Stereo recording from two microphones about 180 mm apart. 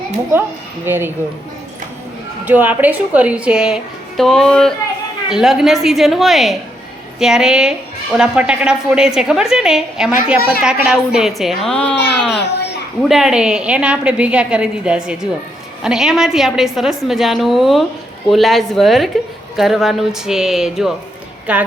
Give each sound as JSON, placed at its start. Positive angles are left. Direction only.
{"t": 0.9, "sound": "a woman's voice", "side_deg": -10}
{"t": 2.4, "sound": "a woman's voice", "side_deg": -10}
{"t": 12.3, "sound": "a sound", "side_deg": 70}
{"t": 13.0, "sound": "a woman's voice", "side_deg": 0}